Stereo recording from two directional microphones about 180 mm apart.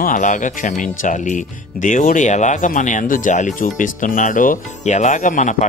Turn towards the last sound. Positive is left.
turn(degrees=45)  # may be behind; listen again after turning